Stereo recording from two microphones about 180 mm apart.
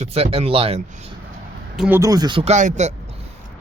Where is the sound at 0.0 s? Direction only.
35° right (ahead or behind).